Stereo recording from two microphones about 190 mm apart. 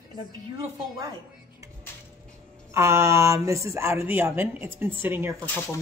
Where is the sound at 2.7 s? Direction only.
15° right (ahead or behind).